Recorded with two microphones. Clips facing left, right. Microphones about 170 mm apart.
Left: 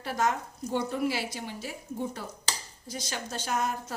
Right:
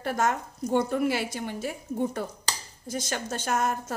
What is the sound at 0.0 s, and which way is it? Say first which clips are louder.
Speech: right 2 dB; 50° right (ahead or behind).